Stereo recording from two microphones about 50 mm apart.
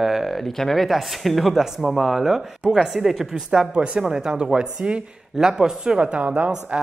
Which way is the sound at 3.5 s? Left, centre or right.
Centre.